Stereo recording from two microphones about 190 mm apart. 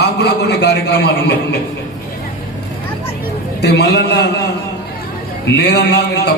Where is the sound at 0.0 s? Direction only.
60° left (ahead or behind).